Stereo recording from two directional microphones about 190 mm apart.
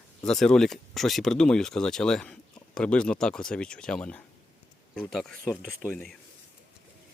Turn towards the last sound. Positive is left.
turn(degrees=0)  # may be behind; listen again after turning